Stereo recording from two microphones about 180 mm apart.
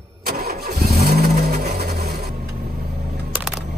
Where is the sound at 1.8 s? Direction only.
60° right (ahead or behind).